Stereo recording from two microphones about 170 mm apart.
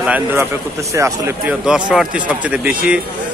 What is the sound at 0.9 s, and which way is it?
Speech, 15° right (ahead or behind).